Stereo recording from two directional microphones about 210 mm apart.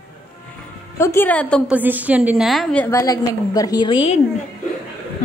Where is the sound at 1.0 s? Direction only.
10° left (ahead or behind).